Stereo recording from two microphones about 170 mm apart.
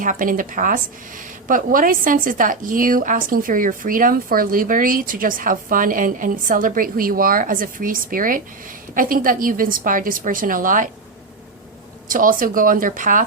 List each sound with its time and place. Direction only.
0.0 s a woman's voice: 50° right (ahead or behind)
12.0 s a woman's voice: 55° right (ahead or behind)